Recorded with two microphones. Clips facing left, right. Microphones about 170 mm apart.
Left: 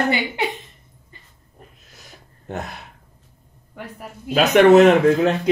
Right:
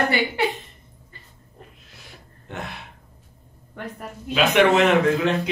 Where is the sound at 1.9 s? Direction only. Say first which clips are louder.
Even; 40° left (ahead or behind).